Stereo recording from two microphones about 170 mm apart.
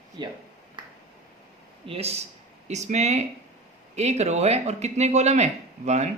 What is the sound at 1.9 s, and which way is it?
Speech, 35° right (ahead or behind).